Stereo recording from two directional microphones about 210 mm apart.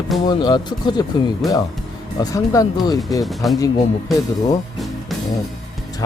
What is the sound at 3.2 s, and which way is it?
Speech, centre (ahead or behind).